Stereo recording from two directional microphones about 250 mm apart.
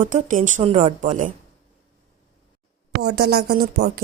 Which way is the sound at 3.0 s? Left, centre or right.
Right.